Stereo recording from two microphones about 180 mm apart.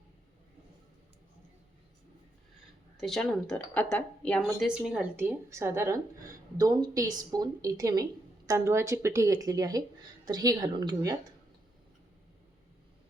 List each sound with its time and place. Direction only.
3.0 s speech: centre (ahead or behind); by 11.3 s 20° right (ahead or behind)